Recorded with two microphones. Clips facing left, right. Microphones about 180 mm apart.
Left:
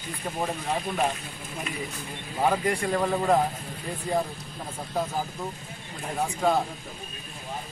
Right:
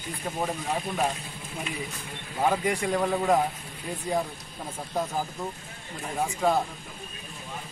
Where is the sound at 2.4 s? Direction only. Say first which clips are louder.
Left 1 dB; centre (ahead or behind).